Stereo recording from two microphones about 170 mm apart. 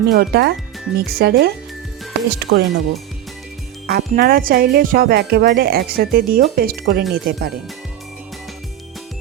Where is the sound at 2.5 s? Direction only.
70° right (ahead or behind).